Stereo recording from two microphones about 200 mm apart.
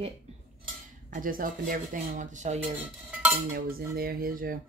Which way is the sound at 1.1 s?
45° right (ahead or behind).